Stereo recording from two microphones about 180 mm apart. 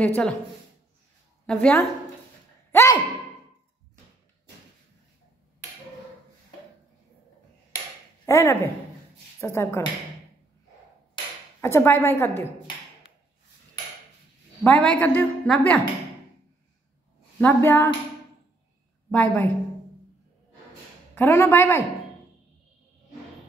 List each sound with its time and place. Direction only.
0.0 s a woman's voice: 10° left (ahead or behind)
1.4 s a woman's voice: 5° left (ahead or behind)
2.7 s gasp: 15° left (ahead or behind)
8.3 s a woman's voice: 15° left (ahead or behind)
11.6 s a woman's voice: 15° left (ahead or behind)
14.6 s a woman's voice: 10° left (ahead or behind)
17.4 s a woman's voice: 10° left (ahead or behind)
19.0 s a woman's voice: 10° left (ahead or behind)
21.1 s a woman's voice: 10° left (ahead or behind)